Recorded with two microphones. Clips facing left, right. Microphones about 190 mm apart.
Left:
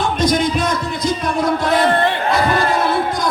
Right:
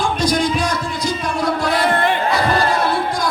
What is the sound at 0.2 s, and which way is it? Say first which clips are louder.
Music: left 3 dB; 20° left (ahead or behind).